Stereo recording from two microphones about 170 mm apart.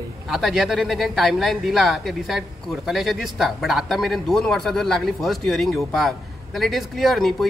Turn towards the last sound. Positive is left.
turn(degrees=0)  # may be behind; listen again after turning